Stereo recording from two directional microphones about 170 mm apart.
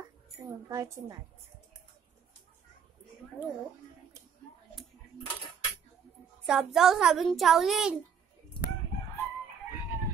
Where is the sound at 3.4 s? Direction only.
10° right (ahead or behind).